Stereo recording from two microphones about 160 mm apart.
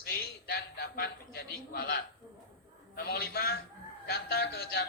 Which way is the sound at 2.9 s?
75° left (ahead or behind).